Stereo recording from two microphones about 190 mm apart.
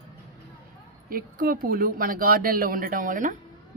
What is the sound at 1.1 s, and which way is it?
A man's voice, 50° right (ahead or behind).